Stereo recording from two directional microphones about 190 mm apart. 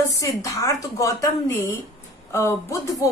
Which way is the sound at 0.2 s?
15° left (ahead or behind).